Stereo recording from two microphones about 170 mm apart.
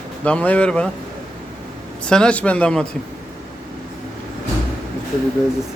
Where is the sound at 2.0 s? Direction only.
5° left (ahead or behind).